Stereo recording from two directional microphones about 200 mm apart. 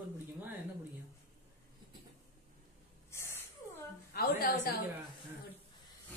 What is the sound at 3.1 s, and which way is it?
Snort, 10° left (ahead or behind).